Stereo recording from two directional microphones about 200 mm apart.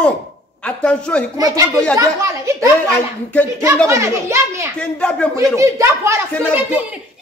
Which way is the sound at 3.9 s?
15° right (ahead or behind).